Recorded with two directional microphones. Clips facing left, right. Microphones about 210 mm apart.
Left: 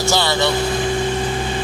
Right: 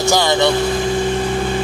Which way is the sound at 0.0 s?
15° right (ahead or behind).